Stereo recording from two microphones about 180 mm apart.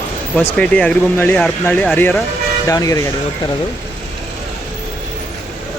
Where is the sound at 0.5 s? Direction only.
5° left (ahead or behind).